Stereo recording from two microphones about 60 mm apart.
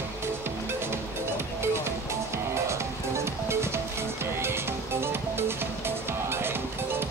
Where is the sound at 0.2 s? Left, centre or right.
Right.